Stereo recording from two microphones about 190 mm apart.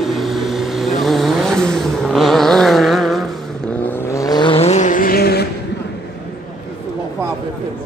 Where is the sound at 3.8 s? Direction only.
15° left (ahead or behind); by 5.5 s 55° left (ahead or behind).